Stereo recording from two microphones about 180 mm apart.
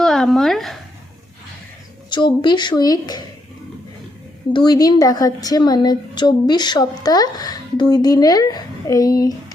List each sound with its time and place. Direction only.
0.0 s speech: centre (ahead or behind)
2.0 s a woman's voice: 25° left (ahead or behind)
4.5 s a woman's voice: 25° left (ahead or behind)